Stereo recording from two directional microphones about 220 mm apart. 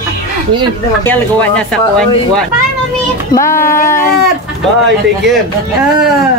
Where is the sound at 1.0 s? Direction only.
10° left (ahead or behind).